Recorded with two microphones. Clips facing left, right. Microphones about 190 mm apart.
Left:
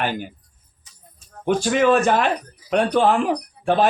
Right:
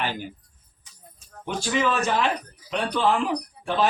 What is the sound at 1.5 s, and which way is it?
A man's voice, 50° left (ahead or behind).